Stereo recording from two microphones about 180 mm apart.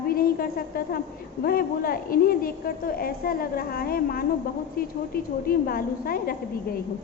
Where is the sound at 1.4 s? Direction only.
55° left (ahead or behind).